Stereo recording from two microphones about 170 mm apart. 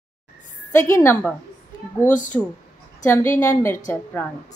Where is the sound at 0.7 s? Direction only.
15° left (ahead or behind).